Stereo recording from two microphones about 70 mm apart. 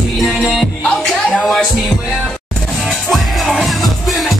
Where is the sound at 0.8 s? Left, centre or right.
Centre.